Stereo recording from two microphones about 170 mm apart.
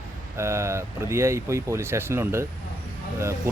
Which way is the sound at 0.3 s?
15° right (ahead or behind).